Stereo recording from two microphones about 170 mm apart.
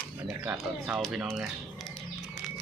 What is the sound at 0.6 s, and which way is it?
Speech, 5° right (ahead or behind).